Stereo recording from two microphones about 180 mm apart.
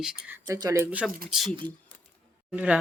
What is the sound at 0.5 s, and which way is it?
Speech, 20° right (ahead or behind).